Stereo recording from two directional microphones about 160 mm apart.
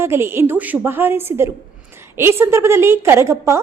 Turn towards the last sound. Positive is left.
turn(degrees=-15)  # may be behind; listen again after turning